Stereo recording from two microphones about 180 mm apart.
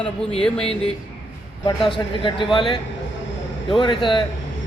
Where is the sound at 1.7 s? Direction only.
25° left (ahead or behind).